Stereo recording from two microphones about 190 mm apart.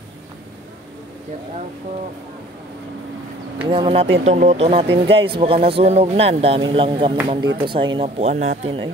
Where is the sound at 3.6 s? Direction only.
25° right (ahead or behind).